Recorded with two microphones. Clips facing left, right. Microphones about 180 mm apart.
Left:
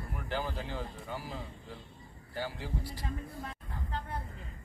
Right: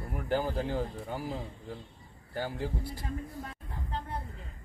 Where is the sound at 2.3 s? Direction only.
50° right (ahead or behind).